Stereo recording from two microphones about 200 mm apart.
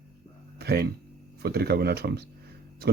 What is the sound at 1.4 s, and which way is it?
Speech, 50° right (ahead or behind).